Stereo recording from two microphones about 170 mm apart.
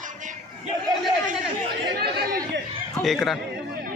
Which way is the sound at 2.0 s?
65° right (ahead or behind).